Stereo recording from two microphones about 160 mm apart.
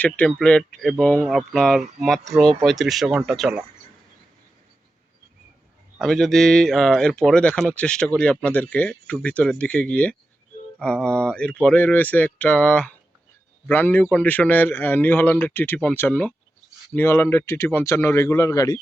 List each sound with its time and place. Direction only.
0.0 s speech: 5° left (ahead or behind)
6.0 s speech: 5° left (ahead or behind); by 18.8 s 25° left (ahead or behind)